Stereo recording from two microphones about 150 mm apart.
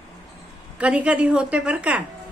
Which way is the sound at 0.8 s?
10° right (ahead or behind).